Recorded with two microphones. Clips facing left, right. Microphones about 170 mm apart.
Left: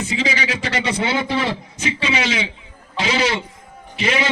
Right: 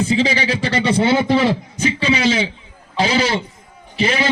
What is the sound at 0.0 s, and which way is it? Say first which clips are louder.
A man's voice: right 5 dB; 30° right (ahead or behind).